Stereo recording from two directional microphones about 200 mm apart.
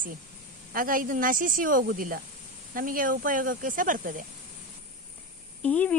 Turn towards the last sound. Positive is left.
turn(degrees=5)  # may be behind; listen again after turning